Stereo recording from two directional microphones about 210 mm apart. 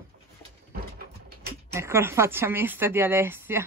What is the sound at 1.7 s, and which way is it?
Speech, 10° right (ahead or behind).